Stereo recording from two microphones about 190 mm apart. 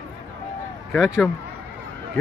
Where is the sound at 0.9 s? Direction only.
Centre (ahead or behind).